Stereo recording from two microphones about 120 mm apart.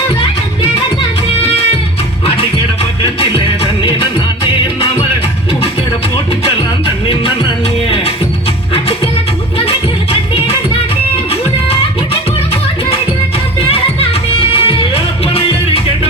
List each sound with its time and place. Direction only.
3.0 s music: 50° left (ahead or behind)
6.8 s music: 45° left (ahead or behind)
9.6 s music: 55° left (ahead or behind)
13.6 s music: 55° left (ahead or behind)